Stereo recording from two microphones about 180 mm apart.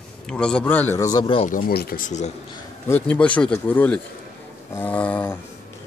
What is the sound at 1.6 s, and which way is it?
Speech, 55° left (ahead or behind).